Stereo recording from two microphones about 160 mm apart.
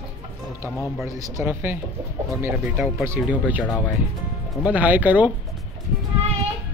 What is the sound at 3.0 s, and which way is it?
Speech, 10° right (ahead or behind).